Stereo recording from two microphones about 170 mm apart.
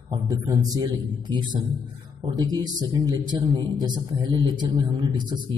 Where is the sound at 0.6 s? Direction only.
25° right (ahead or behind).